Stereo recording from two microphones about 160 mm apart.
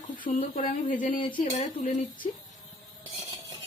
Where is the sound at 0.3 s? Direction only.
60° left (ahead or behind).